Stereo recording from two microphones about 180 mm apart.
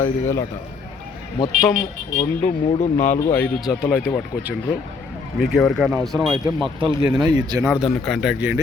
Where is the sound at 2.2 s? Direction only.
35° left (ahead or behind).